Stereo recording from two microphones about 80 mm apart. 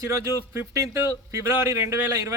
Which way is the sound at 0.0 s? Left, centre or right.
Right.